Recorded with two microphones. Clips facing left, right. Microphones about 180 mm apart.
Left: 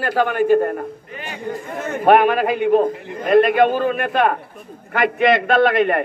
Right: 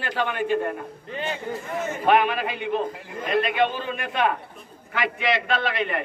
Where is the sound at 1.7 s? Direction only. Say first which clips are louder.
Left 6 dB; 60° left (ahead or behind).